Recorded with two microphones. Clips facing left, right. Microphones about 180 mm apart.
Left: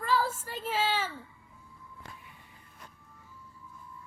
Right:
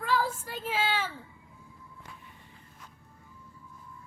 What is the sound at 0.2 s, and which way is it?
Child singing, 10° right (ahead or behind).